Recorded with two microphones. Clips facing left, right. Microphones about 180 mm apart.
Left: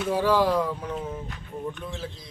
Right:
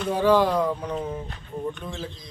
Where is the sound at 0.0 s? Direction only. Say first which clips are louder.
Right 2 dB; 5° left (ahead or behind).